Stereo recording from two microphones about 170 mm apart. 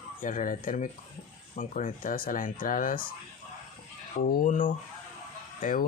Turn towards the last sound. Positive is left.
turn(degrees=55)  # may be behind; listen again after turning